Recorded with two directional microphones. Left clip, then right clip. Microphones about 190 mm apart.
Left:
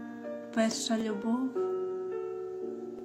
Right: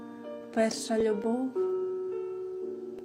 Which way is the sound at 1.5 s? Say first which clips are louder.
Right 2 dB; 20° left (ahead or behind).